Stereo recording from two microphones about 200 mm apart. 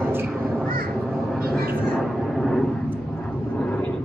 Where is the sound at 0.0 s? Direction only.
10° right (ahead or behind).